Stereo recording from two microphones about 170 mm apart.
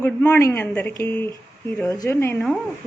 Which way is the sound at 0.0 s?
15° left (ahead or behind).